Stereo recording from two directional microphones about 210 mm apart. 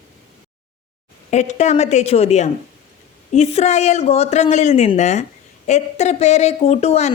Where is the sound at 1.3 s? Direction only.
35° left (ahead or behind).